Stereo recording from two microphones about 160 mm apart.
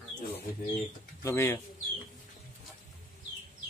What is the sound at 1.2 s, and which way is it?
Speech, 15° left (ahead or behind).